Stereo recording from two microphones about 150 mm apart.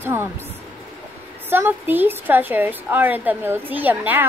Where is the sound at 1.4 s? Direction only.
15° right (ahead or behind).